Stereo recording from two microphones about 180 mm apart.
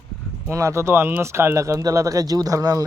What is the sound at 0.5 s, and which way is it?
Speech, 15° right (ahead or behind).